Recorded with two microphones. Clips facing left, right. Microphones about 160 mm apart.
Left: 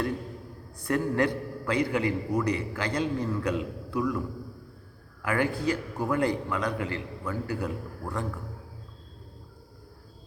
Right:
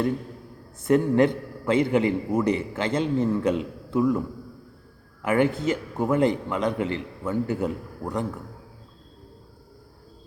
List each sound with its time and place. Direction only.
0.8 s a man's voice: 20° right (ahead or behind)
5.2 s a man's voice: 20° right (ahead or behind)